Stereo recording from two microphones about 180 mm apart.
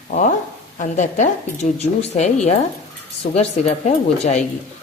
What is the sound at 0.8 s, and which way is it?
A woman's voice, 45° left (ahead or behind).